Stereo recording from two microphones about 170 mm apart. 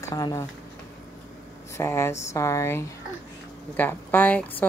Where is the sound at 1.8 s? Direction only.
15° left (ahead or behind).